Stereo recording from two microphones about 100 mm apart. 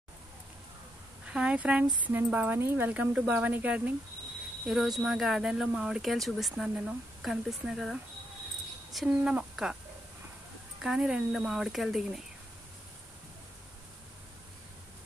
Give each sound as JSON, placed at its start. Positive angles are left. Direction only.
{"t": 1.2, "sound": "speech", "side_deg": -10}
{"t": 4.6, "sound": "speech", "side_deg": -5}
{"t": 10.8, "sound": "speech", "side_deg": -5}